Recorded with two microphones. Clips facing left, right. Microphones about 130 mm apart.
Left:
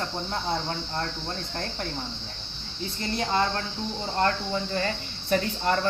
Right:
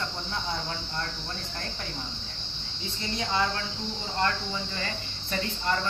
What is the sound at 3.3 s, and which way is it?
Speech, 45° left (ahead or behind).